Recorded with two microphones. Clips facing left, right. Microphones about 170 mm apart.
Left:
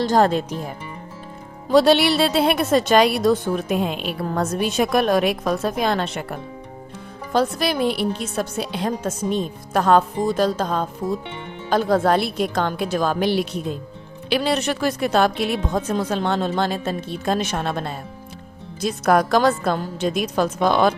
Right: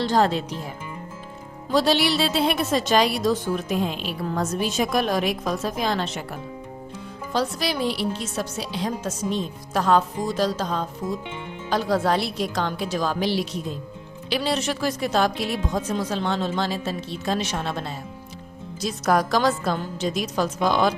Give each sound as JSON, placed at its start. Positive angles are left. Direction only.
{"t": 0.0, "sound": "speech", "side_deg": 45}
{"t": 1.7, "sound": "a woman's voice", "side_deg": 60}